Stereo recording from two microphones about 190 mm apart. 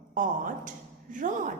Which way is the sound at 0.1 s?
45° right (ahead or behind).